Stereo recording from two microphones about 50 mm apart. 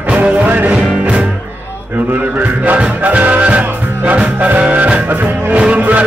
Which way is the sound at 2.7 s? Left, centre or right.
Right.